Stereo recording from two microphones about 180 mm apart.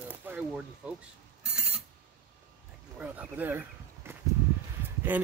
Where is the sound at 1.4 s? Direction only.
5° right (ahead or behind).